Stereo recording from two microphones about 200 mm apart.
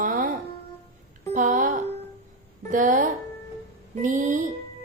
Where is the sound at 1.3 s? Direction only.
40° right (ahead or behind).